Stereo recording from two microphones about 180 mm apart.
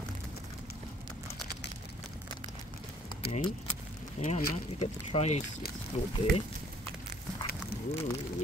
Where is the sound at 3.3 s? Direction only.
40° left (ahead or behind).